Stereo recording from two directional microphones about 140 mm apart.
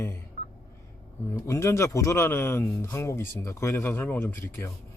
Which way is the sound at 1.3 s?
20° left (ahead or behind).